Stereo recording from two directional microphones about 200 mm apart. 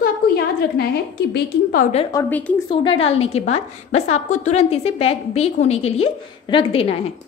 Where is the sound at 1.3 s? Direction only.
45° left (ahead or behind).